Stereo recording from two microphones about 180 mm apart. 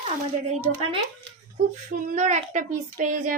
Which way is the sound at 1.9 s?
40° right (ahead or behind).